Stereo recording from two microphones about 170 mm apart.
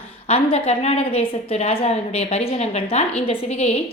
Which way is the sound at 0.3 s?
35° left (ahead or behind).